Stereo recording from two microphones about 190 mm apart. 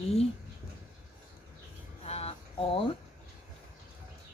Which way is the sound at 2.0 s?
35° left (ahead or behind).